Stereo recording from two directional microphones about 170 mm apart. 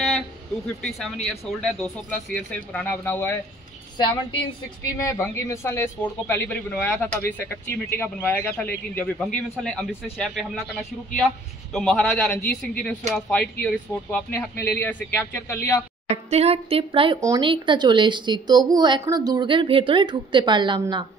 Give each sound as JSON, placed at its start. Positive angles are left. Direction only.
{"t": 0.8, "sound": "speech", "side_deg": 0}
{"t": 4.3, "sound": "a man's voice", "side_deg": 25}
{"t": 16.1, "sound": "a woman's voice", "side_deg": -40}